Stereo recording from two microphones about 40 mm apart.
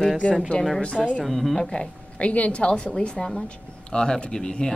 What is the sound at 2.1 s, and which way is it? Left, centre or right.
A woman's voice, left.